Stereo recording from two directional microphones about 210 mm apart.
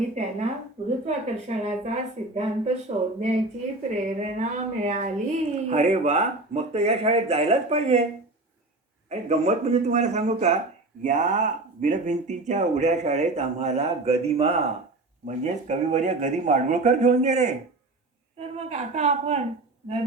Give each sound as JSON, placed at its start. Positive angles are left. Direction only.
{"t": 0.2, "sound": "speech", "side_deg": -35}
{"t": 9.0, "sound": "a woman's voice", "side_deg": -30}